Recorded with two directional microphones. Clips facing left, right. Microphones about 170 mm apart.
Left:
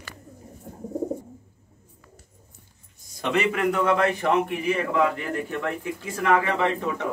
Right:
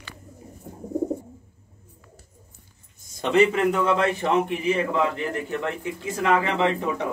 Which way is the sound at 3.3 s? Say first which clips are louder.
Right 4 dB; 25° right (ahead or behind).